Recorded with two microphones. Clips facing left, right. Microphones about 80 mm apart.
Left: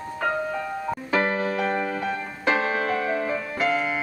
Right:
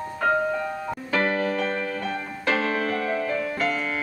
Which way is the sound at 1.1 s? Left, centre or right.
Centre.